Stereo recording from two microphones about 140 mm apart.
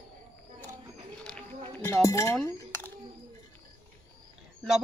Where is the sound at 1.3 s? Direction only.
5° left (ahead or behind).